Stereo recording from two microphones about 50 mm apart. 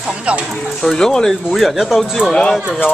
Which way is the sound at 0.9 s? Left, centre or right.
Centre.